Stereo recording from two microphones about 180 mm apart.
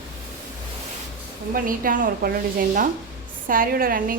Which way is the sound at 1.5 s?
50° right (ahead or behind).